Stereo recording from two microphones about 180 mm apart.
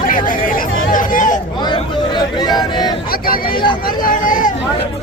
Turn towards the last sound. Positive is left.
turn(degrees=45)  # may be behind; listen again after turning